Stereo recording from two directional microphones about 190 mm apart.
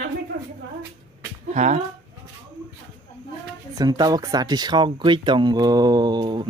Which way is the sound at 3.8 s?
20° right (ahead or behind).